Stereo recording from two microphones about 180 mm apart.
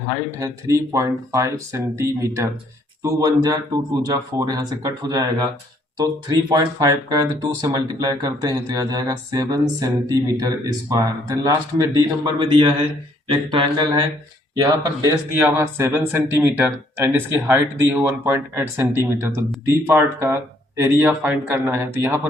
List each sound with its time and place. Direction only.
0.3 s speech: 15° right (ahead or behind)